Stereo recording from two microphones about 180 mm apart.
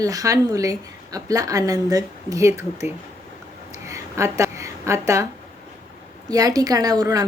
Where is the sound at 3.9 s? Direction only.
15° right (ahead or behind).